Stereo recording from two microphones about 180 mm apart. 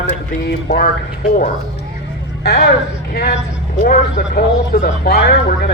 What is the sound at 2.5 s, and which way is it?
Speech, 65° left (ahead or behind).